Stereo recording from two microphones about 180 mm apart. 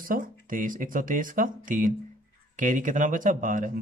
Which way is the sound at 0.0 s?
50° right (ahead or behind).